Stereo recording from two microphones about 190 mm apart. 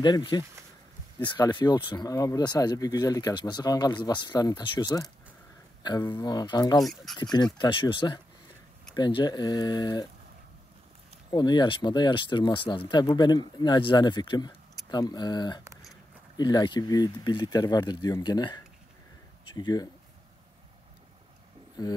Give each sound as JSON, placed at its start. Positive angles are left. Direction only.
{"t": 0.0, "sound": "speech", "side_deg": 25}
{"t": 11.2, "sound": "speech", "side_deg": 20}